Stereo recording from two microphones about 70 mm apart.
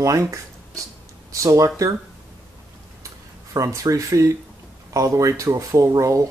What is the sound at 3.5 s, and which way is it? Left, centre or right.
Speech, right.